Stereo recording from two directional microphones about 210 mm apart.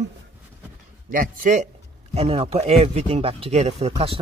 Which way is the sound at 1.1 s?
40° right (ahead or behind).